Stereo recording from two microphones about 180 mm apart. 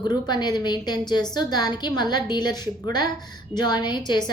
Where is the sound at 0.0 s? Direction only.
25° left (ahead or behind).